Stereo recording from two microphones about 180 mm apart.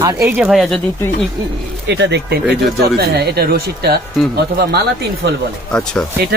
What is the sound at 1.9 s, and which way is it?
Speech, 70° right (ahead or behind).